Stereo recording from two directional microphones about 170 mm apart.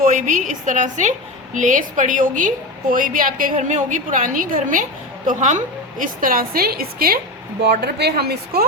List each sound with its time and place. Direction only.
0.0 s a woman's voice: 50° right (ahead or behind)
7.6 s speech: 75° right (ahead or behind)